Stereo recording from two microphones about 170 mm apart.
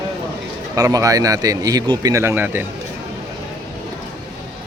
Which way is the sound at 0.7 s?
20° right (ahead or behind).